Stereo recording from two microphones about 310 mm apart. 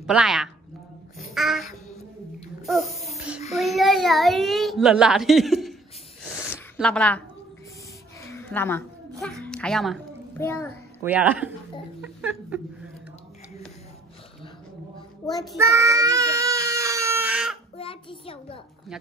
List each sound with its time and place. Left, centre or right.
0.0 s a woman's voice: centre
1.1 s a sound: centre
3.5 s a child's voice: centre
8.3 s a sound: centre
11.0 s a child's voice: centre
15.4 s child singing: centre
17.7 s a child's voice: centre